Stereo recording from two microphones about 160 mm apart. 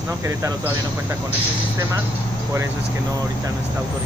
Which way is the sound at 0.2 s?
20° right (ahead or behind).